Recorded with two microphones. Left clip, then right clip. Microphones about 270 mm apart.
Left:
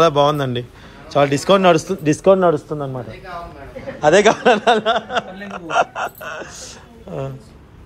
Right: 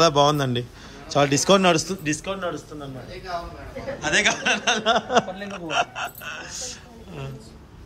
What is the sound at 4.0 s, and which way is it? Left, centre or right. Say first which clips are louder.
Speech: left 9 dB; centre.